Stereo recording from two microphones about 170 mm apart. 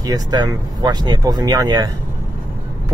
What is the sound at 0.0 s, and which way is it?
Speech, 25° right (ahead or behind).